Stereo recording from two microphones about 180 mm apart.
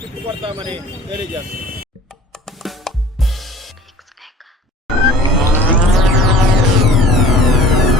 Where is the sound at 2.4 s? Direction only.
Centre (ahead or behind).